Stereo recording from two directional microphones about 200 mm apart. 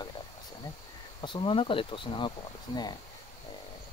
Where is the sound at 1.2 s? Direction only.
25° left (ahead or behind).